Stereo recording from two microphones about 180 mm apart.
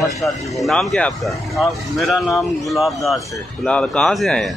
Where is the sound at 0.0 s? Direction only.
Centre (ahead or behind).